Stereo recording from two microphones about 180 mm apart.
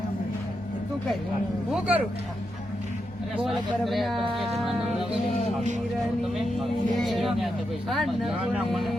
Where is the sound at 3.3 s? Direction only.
Centre (ahead or behind).